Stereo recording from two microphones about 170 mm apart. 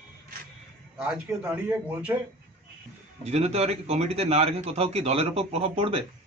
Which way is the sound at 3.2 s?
40° right (ahead or behind).